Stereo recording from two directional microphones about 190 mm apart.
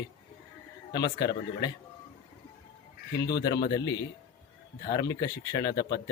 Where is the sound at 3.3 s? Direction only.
20° left (ahead or behind).